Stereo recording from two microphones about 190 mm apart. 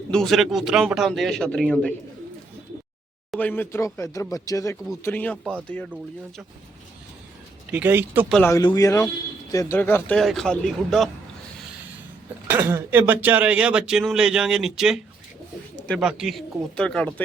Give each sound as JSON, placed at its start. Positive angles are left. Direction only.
{"t": 0.1, "sound": "speech", "side_deg": 0}
{"t": 3.3, "sound": "speech", "side_deg": 10}
{"t": 7.7, "sound": "speech", "side_deg": -10}
{"t": 8.3, "sound": "speech", "side_deg": 5}
{"t": 8.5, "sound": "speech", "side_deg": 20}
{"t": 12.5, "sound": "speech", "side_deg": -10}